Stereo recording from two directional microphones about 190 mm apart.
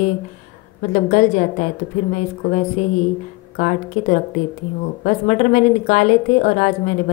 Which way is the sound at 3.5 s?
40° left (ahead or behind).